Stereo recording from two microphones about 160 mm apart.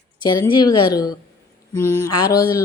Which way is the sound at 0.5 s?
25° left (ahead or behind).